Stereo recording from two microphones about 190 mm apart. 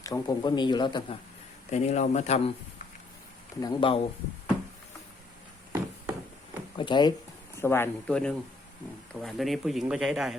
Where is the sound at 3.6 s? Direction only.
25° left (ahead or behind).